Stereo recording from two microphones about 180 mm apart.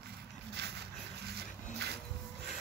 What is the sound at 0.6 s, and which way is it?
Music, 65° right (ahead or behind).